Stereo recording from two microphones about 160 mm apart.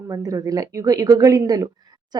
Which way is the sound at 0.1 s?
20° right (ahead or behind).